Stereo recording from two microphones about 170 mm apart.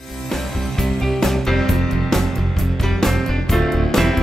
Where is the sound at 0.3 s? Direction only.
Centre (ahead or behind).